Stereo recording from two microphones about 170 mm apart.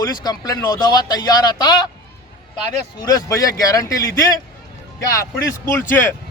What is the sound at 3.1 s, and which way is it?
Speech, 20° left (ahead or behind).